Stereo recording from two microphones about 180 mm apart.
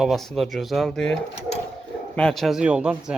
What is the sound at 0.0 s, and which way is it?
Speech, centre (ahead or behind).